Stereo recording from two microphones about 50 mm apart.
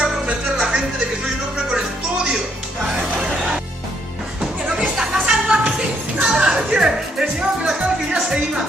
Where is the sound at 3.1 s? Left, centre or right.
Centre.